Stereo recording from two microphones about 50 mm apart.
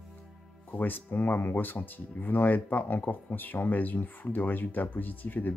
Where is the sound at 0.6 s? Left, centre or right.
Left.